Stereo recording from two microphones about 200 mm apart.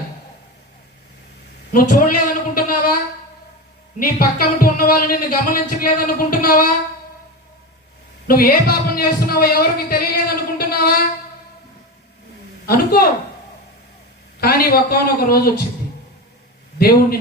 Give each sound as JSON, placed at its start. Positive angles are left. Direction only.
{"t": 1.7, "sound": "a sound", "side_deg": 45}
{"t": 4.2, "sound": "speech", "side_deg": 45}
{"t": 8.3, "sound": "a man's voice", "side_deg": 45}
{"t": 12.6, "sound": "speech", "side_deg": 50}
{"t": 14.4, "sound": "speech", "side_deg": 50}
{"t": 16.7, "sound": "a man's voice", "side_deg": 50}